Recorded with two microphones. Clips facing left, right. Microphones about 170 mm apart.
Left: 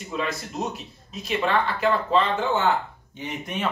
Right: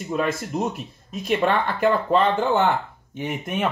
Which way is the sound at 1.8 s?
55° right (ahead or behind).